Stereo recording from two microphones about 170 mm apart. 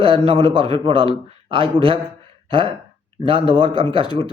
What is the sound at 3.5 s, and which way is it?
Speech, 30° right (ahead or behind).